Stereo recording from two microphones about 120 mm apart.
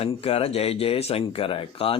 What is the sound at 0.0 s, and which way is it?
Speech, 55° left (ahead or behind).